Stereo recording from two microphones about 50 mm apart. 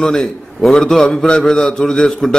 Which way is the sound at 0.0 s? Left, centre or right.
Centre.